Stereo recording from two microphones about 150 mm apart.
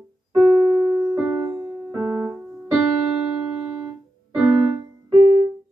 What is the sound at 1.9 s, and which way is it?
Keyboard, 5° right (ahead or behind).